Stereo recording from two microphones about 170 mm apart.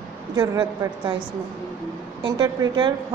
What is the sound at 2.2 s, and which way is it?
Speech, 25° right (ahead or behind).